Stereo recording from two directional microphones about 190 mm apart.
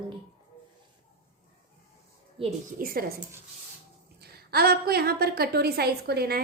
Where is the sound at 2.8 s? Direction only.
50° right (ahead or behind).